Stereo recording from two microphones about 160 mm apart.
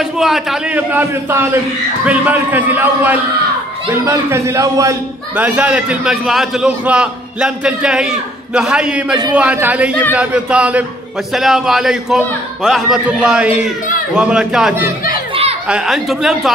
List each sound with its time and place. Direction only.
0.0 s a man's voice: centre (ahead or behind); by 4.9 s 20° right (ahead or behind)
5.3 s a man's voice: 10° right (ahead or behind)
14.8 s speech: 65° left (ahead or behind)
15.7 s a man's voice: 5° right (ahead or behind)